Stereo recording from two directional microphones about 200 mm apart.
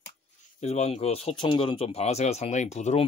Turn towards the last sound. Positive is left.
turn(degrees=35)  # may be behind; listen again after turning